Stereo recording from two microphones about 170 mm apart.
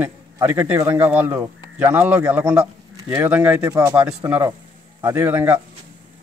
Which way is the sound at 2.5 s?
20° right (ahead or behind).